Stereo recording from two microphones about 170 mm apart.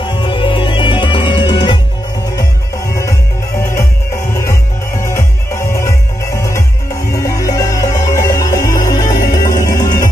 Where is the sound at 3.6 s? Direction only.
15° left (ahead or behind).